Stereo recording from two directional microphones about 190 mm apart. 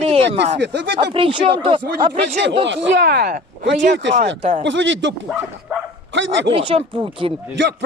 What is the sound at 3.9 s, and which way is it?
Speech, 70° right (ahead or behind).